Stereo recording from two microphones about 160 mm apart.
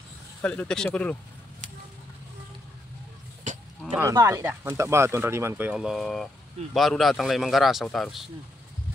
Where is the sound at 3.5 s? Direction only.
50° right (ahead or behind).